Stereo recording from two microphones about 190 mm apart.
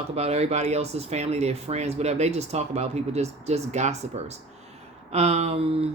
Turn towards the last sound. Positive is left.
turn(degrees=-35)  # may be behind; listen again after turning